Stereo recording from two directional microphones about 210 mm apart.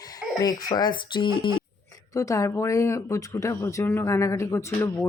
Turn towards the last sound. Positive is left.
turn(degrees=10)  # may be behind; listen again after turning